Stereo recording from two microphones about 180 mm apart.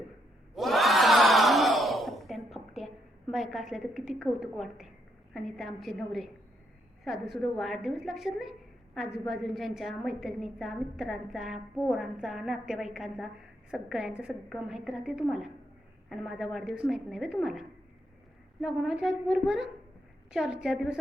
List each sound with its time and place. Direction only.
0.5 s crowd: centre (ahead or behind)
5.3 s a woman's voice: centre (ahead or behind)